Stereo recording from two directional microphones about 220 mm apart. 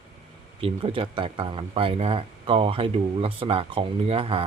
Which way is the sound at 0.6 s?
25° right (ahead or behind).